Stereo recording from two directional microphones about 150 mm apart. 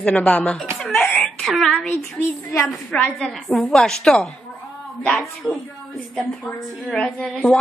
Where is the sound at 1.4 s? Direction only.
Centre (ahead or behind).